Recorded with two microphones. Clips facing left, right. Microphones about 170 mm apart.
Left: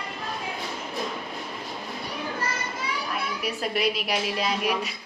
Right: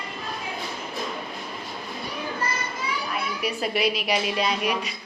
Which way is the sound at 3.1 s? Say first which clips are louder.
Right 2 dB; centre (ahead or behind).